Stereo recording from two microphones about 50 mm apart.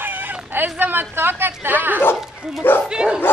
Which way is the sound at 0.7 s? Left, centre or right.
Right.